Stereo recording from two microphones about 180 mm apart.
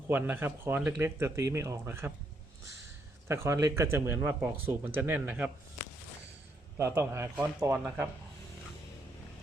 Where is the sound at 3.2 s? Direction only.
15° right (ahead or behind).